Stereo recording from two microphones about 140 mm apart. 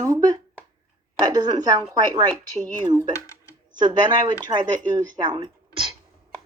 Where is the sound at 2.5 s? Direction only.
65° right (ahead or behind).